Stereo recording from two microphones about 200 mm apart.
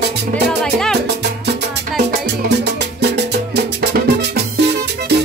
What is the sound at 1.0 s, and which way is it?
Music, 55° right (ahead or behind).